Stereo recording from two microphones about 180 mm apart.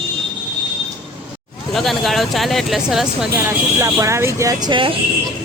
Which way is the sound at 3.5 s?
15° right (ahead or behind).